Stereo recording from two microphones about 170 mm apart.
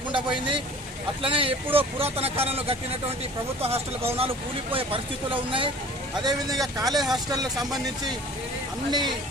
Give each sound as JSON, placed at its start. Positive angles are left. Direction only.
{"t": 0.1, "sound": "speech", "side_deg": -30}
{"t": 7.5, "sound": "speech", "side_deg": 0}
{"t": 8.9, "sound": "speech", "side_deg": -25}